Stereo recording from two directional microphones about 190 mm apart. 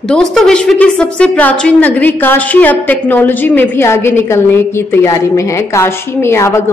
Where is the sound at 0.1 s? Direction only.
5° left (ahead or behind).